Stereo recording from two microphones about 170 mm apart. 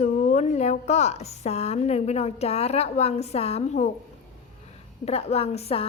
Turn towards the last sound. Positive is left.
turn(degrees=35)  # may be behind; listen again after turning